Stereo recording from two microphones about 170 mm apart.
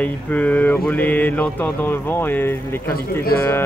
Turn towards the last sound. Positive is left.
turn(degrees=15)  # may be behind; listen again after turning